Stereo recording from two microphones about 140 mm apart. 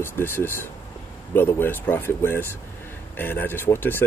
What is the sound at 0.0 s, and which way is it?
Speech, 15° left (ahead or behind).